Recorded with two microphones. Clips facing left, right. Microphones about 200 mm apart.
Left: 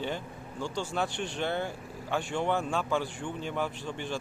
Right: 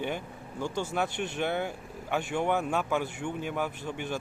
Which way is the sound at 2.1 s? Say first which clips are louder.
Right 1 dB; 10° right (ahead or behind).